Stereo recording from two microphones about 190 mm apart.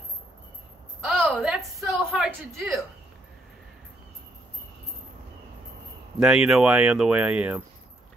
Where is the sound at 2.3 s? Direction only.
15° right (ahead or behind).